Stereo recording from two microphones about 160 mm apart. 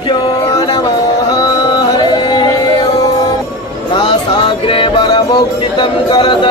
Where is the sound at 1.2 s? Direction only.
25° left (ahead or behind).